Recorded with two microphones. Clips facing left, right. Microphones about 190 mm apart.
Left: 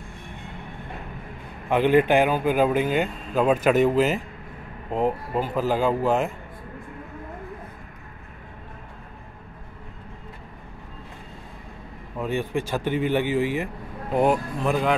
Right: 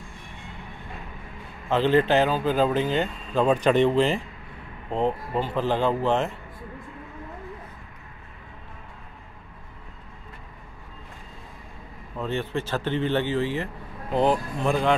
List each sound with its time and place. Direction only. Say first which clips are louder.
1.7 s speech: left 2 dB; 15° left (ahead or behind)
12.2 s speech: left 2 dB; 10° left (ahead or behind)